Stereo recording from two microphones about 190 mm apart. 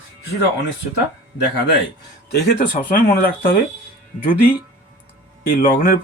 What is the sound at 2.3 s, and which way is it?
Speech, 55° left (ahead or behind).